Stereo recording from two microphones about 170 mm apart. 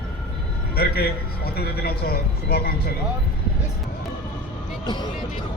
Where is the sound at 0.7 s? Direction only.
65° left (ahead or behind).